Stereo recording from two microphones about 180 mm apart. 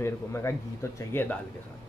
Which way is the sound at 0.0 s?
15° left (ahead or behind).